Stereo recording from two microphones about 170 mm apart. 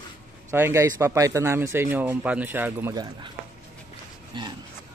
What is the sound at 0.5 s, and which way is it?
Speech, 15° right (ahead or behind).